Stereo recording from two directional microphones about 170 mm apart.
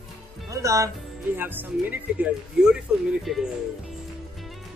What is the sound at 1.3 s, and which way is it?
Speech, 10° right (ahead or behind).